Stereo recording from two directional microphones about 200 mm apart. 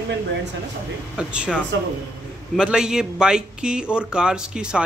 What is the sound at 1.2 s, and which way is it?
Speech, 5° right (ahead or behind).